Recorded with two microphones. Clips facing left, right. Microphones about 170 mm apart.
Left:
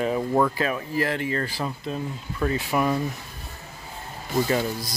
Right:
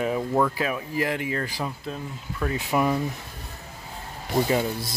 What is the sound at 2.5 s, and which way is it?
Speech, 15° right (ahead or behind).